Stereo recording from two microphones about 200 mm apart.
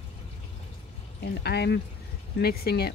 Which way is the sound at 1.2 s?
55° left (ahead or behind).